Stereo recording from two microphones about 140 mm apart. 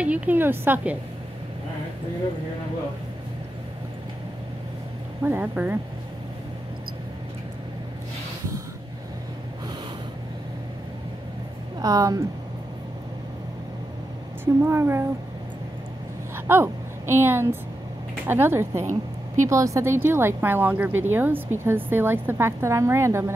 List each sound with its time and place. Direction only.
0.0 s a woman's voice: 10° right (ahead or behind)
5.2 s a woman's voice: 15° right (ahead or behind)
11.8 s a woman's voice: 25° right (ahead or behind)
14.4 s a woman's voice: 15° right (ahead or behind)
16.3 s a woman's voice: 15° right (ahead or behind)